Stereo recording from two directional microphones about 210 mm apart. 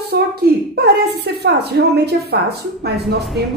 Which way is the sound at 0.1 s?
50° right (ahead or behind).